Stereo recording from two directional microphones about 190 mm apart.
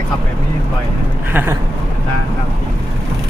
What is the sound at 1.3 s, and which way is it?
Speech, 10° right (ahead or behind).